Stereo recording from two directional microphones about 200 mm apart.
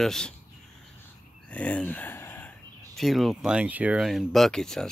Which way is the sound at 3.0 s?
Centre (ahead or behind).